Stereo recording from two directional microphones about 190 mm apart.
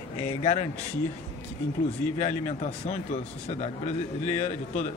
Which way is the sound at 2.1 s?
40° left (ahead or behind).